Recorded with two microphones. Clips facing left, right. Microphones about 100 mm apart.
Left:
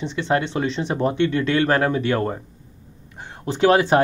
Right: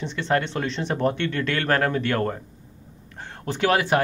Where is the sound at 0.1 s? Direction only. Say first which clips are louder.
Left 2 dB; 15° left (ahead or behind).